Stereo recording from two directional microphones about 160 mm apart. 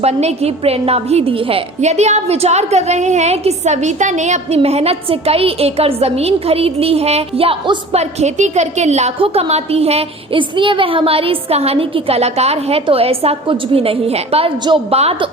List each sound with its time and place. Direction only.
0.0 s a woman's voice: 40° right (ahead or behind)